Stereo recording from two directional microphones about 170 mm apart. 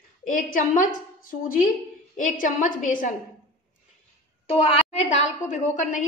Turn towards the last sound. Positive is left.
turn(degrees=45)  # may be behind; listen again after turning